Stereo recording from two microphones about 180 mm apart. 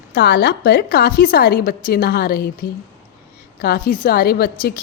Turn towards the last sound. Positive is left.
turn(degrees=60)  # may be behind; listen again after turning